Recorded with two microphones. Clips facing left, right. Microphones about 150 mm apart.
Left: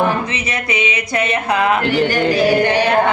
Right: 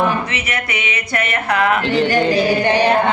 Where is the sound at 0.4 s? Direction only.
20° left (ahead or behind).